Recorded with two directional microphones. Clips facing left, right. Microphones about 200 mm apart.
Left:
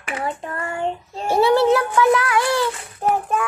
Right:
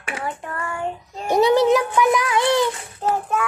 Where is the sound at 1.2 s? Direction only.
15° right (ahead or behind).